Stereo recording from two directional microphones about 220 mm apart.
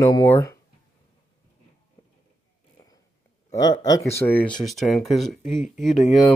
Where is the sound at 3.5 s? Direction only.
15° left (ahead or behind); by 5.9 s centre (ahead or behind).